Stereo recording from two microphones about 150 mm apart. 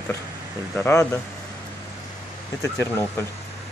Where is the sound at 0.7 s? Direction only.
15° left (ahead or behind).